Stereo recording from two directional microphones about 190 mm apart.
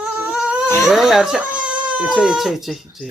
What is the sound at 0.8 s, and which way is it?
Speech, 5° right (ahead or behind).